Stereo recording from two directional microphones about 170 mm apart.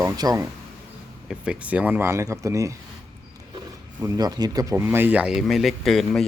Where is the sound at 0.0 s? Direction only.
20° right (ahead or behind).